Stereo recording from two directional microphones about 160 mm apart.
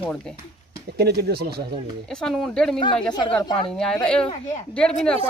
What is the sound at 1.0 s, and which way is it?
Speech, 90° right.